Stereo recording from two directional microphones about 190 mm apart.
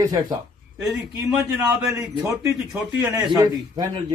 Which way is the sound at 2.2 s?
15° right (ahead or behind).